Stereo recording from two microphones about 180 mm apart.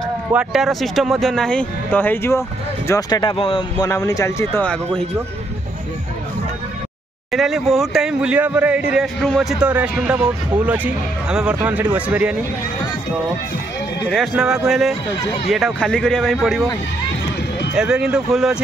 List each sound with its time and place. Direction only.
0.3 s speech: 5° right (ahead or behind); by 4.6 s 15° left (ahead or behind)
7.3 s speech: centre (ahead or behind)
14.1 s speech: centre (ahead or behind)
17.7 s speech: 5° right (ahead or behind)